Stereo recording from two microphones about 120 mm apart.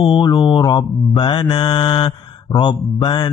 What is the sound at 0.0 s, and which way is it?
Mantra, 40° left (ahead or behind).